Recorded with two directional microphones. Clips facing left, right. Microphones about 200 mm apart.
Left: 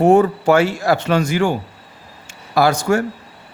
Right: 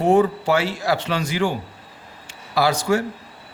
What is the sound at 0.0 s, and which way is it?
A man's voice, 50° left (ahead or behind).